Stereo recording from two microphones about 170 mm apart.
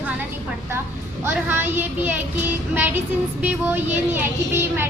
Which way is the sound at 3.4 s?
10° right (ahead or behind).